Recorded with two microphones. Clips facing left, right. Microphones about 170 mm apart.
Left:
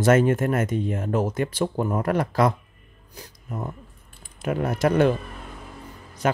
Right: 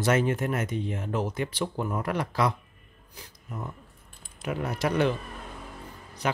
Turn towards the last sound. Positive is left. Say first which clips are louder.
# left 6 dB
turn(degrees=45)  # may be behind; listen again after turning